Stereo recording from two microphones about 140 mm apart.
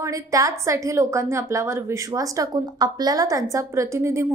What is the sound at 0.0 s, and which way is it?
A woman's voice, 25° right (ahead or behind).